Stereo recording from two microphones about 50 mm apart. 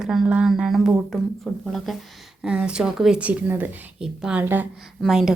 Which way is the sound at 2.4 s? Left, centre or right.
Centre.